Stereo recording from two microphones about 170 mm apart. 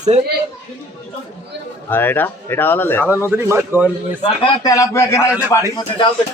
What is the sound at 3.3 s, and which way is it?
Speech, 15° right (ahead or behind).